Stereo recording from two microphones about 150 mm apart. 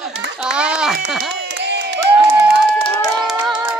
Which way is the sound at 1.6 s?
90° right.